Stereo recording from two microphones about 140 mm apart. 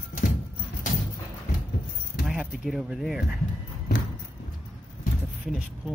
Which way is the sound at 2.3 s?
5° right (ahead or behind).